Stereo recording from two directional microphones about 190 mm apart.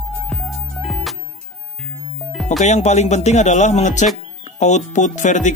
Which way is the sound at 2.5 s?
35° left (ahead or behind).